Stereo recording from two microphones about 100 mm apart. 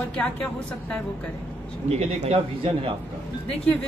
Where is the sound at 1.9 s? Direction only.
90° right; by 2.9 s 65° right (ahead or behind).